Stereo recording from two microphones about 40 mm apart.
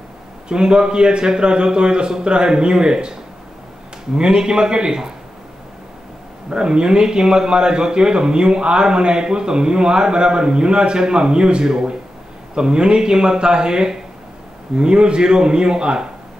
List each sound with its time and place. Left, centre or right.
0.5 s a man's voice: right
6.5 s a man's voice: right